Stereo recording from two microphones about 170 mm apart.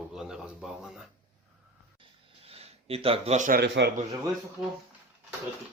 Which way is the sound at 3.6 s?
80° right.